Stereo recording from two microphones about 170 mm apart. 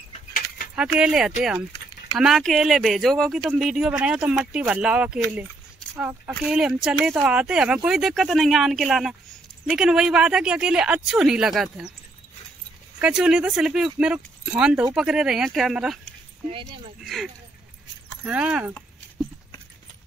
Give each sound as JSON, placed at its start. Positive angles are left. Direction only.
{"t": 0.7, "sound": "speech", "side_deg": -5}
{"t": 13.0, "sound": "speech", "side_deg": -5}
{"t": 16.4, "sound": "speech", "side_deg": -30}
{"t": 17.0, "sound": "speech", "side_deg": 0}